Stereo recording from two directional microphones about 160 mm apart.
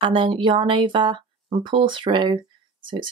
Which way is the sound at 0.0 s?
30° right (ahead or behind).